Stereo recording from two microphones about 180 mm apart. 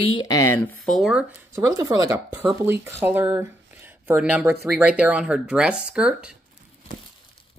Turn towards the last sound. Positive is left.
turn(degrees=-5)  # may be behind; listen again after turning